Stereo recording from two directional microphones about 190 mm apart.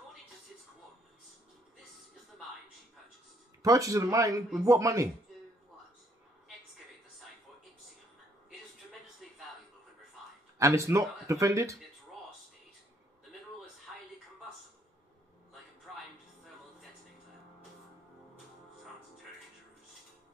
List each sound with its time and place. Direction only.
3.6 s speech: 15° right (ahead or behind)
9.2 s a sound: centre (ahead or behind)
10.6 s speech: 15° right (ahead or behind)